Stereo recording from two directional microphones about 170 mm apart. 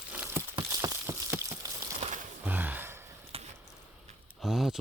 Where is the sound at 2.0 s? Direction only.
40° right (ahead or behind).